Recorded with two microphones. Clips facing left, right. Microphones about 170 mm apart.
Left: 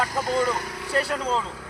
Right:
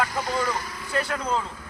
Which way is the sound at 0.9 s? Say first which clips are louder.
Left 1 dB; 35° left (ahead or behind).